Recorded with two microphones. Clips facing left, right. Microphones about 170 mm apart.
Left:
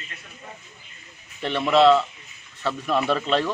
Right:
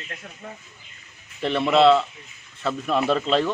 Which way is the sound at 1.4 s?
Centre (ahead or behind).